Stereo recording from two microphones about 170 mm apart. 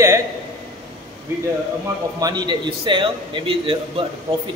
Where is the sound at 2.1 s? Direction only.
25° right (ahead or behind).